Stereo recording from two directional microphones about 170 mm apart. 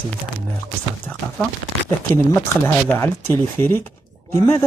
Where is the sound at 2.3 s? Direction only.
15° left (ahead or behind).